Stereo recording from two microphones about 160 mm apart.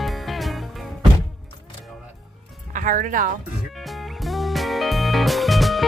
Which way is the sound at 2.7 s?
55° right (ahead or behind).